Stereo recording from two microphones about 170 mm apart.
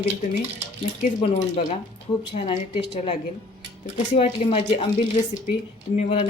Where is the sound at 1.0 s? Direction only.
40° left (ahead or behind).